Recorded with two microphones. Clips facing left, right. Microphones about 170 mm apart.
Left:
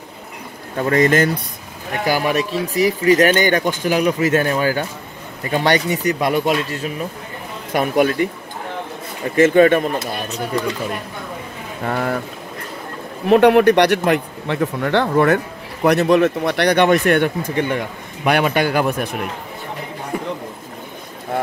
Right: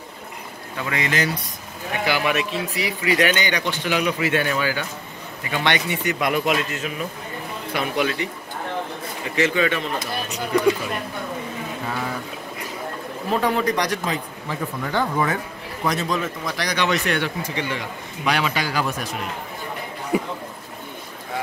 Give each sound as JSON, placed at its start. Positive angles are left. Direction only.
{"t": 0.7, "sound": "speech", "side_deg": 45}
{"t": 2.0, "sound": "a man's voice", "side_deg": 40}
{"t": 7.7, "sound": "speech", "side_deg": 50}
{"t": 9.3, "sound": "speech", "side_deg": 50}
{"t": 11.8, "sound": "a sound", "side_deg": 60}
{"t": 13.3, "sound": "speech", "side_deg": 70}
{"t": 20.1, "sound": "a sound", "side_deg": -10}